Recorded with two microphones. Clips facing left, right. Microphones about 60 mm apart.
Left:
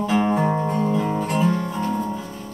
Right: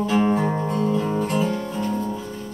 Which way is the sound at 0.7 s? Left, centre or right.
Left.